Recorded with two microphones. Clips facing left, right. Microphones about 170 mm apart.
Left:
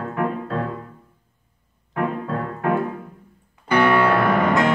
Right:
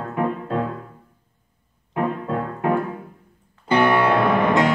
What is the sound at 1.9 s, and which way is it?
Music, 20° right (ahead or behind).